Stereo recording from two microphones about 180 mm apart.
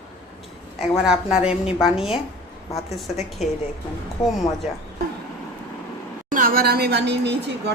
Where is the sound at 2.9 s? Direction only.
Centre (ahead or behind).